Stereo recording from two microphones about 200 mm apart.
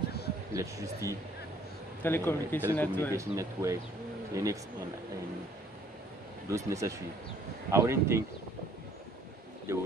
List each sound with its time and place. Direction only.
0.6 s speech: 15° right (ahead or behind)
2.0 s speech: 10° left (ahead or behind)
3.1 s speech: 15° right (ahead or behind)
6.5 s speech: 15° right (ahead or behind)
9.7 s speech: 15° right (ahead or behind)